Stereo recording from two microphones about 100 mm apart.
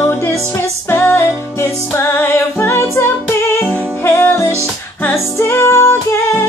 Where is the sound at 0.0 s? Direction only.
25° left (ahead or behind).